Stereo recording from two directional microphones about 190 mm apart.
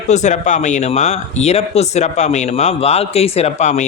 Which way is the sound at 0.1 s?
40° left (ahead or behind).